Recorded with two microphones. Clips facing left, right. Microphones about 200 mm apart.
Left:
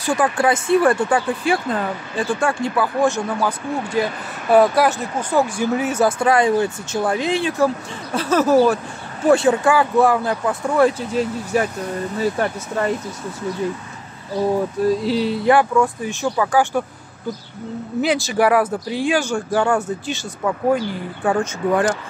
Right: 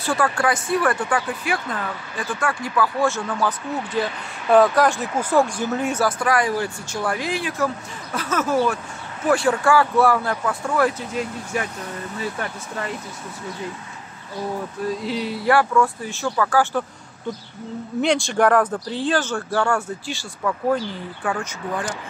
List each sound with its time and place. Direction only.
0.0 s speech: 15° left (ahead or behind)
5.9 s speech: 25° left (ahead or behind)
9.2 s speech: 25° left (ahead or behind)
11.1 s speech: 35° left (ahead or behind)
15.0 s speech: 30° left (ahead or behind)
18.0 s speech: 5° left (ahead or behind); by 21.5 s 30° left (ahead or behind)